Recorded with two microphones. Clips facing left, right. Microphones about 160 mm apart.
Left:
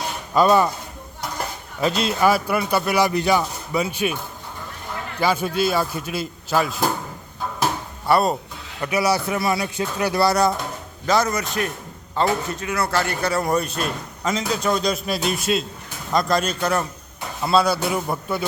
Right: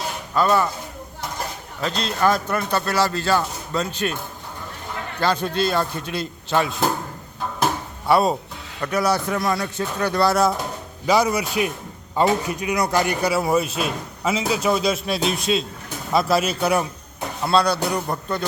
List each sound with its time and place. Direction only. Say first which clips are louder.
0.3 s a man's voice: left 3 dB; 15° left (ahead or behind)
1.8 s a man's voice: left 2 dB; 10° left (ahead or behind)
5.2 s speech: left 1 dB; 5° left (ahead or behind)
8.0 s a man's voice: right 1 dB; centre (ahead or behind)
17.4 s speech: left 1 dB; 5° left (ahead or behind)